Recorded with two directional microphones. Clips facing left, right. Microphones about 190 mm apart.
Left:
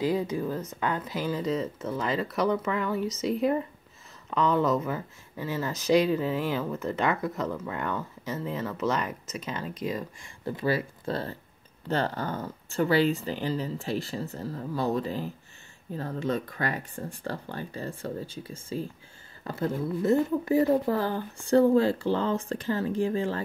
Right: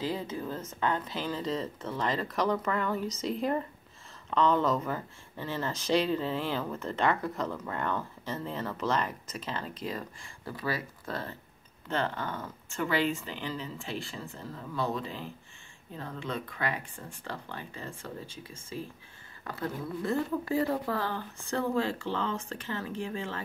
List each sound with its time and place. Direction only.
0.0 s speech: 15° left (ahead or behind)
4.3 s speech: 5° left (ahead or behind)
10.4 s speech: 25° left (ahead or behind)